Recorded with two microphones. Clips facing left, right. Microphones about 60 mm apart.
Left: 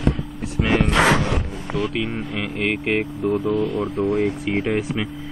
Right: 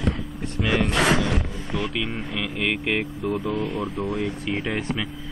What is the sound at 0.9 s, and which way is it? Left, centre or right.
Music, left.